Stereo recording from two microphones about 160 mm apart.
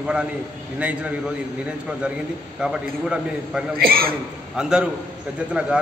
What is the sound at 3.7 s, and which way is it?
Speech, 70° right (ahead or behind).